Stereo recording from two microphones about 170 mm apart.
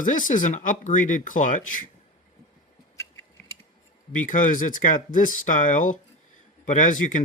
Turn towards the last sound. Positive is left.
turn(degrees=50)  # may be behind; listen again after turning